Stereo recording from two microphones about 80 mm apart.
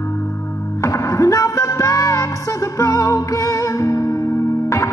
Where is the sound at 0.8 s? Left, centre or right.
Left.